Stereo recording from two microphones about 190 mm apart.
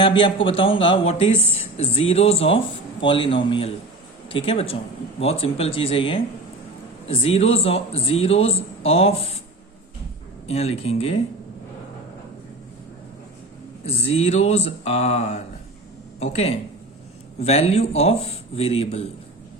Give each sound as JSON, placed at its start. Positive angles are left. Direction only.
{"t": 0.0, "sound": "a man's voice", "side_deg": 25}
{"t": 10.4, "sound": "a man's voice", "side_deg": 35}
{"t": 13.8, "sound": "a man's voice", "side_deg": 30}